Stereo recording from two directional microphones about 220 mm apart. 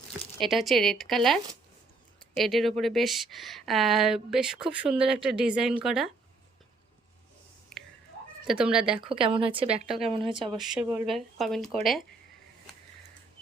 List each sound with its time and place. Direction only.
0.3 s speech: centre (ahead or behind)
2.4 s speech: centre (ahead or behind)
7.7 s a sound: centre (ahead or behind)
8.4 s speech: 5° right (ahead or behind)
9.0 s a woman's voice: 25° right (ahead or behind)
9.8 s speech: centre (ahead or behind)
10.1 s a woman's voice: 25° right (ahead or behind)
10.5 s speech: centre (ahead or behind)